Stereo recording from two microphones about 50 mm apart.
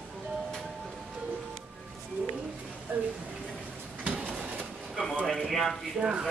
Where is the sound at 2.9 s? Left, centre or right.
Right.